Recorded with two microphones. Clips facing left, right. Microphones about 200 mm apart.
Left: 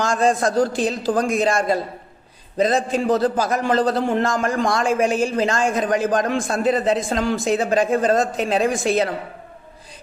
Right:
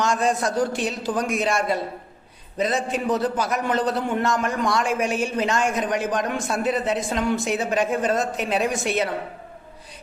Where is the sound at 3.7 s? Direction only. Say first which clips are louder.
Left 5 dB; 90° left.